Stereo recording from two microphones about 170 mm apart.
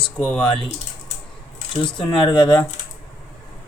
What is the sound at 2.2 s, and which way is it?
Speech, 25° left (ahead or behind).